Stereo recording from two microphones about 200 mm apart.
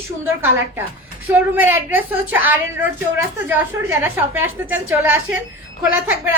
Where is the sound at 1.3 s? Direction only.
10° right (ahead or behind).